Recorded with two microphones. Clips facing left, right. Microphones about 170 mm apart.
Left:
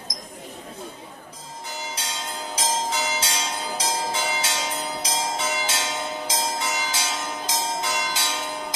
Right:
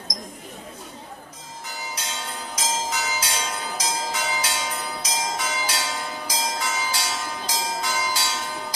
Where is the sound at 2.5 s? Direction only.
30° left (ahead or behind).